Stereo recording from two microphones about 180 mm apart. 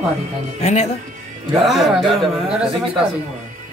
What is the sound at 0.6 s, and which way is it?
Speech, 35° left (ahead or behind).